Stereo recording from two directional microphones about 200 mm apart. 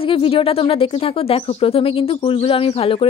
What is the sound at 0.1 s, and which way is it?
A woman's voice, 25° left (ahead or behind).